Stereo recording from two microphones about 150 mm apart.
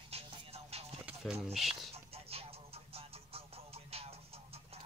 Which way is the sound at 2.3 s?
40° right (ahead or behind).